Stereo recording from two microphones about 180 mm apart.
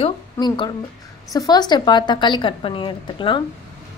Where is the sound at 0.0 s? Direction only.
25° left (ahead or behind).